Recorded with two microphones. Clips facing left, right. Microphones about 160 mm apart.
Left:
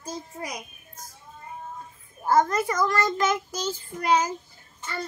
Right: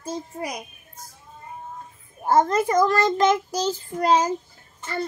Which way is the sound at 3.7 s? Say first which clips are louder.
Right 3 dB; 35° right (ahead or behind).